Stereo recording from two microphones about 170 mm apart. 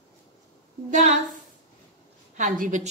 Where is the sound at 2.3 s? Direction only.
50° right (ahead or behind).